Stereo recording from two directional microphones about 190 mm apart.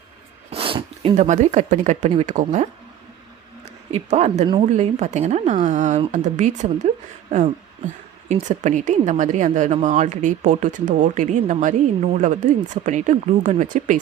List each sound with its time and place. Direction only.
0.5 s a sound: 30° right (ahead or behind)
1.1 s speech: 40° right (ahead or behind)
3.9 s speech: 35° right (ahead or behind)